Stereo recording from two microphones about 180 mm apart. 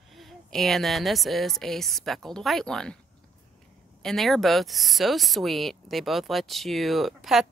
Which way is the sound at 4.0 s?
Centre (ahead or behind).